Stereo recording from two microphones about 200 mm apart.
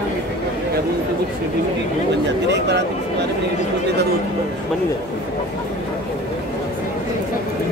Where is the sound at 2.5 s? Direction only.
60° right (ahead or behind).